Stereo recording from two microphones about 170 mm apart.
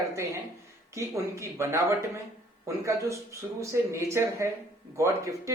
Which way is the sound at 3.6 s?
15° right (ahead or behind).